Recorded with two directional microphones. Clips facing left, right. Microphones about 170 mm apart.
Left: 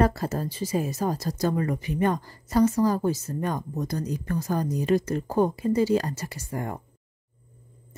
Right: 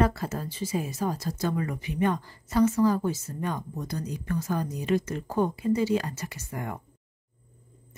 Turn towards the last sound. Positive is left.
turn(degrees=35)  # may be behind; listen again after turning